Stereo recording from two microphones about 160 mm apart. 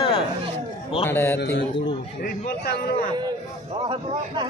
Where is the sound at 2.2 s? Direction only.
70° left (ahead or behind).